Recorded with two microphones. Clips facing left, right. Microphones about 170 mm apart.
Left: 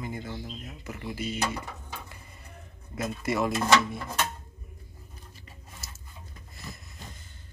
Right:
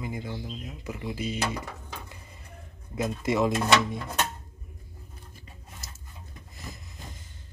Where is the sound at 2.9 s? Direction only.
15° right (ahead or behind).